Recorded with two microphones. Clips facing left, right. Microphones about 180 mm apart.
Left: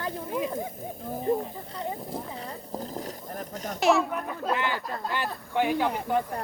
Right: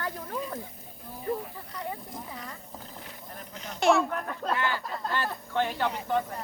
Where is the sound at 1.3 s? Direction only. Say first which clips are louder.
Left 5 dB; 25° left (ahead or behind).